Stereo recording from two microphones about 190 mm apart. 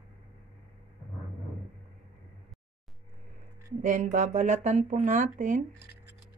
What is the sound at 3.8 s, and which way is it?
Speech, 40° right (ahead or behind).